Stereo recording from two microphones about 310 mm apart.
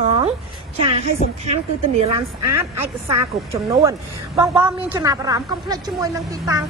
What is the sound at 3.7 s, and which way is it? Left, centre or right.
Speech, centre.